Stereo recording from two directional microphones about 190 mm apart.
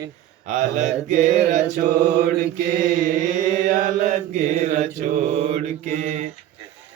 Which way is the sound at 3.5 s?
40° right (ahead or behind).